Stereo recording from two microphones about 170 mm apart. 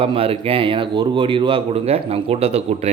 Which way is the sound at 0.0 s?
30° right (ahead or behind).